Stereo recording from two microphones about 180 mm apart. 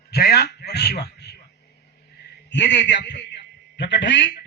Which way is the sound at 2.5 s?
75° left (ahead or behind).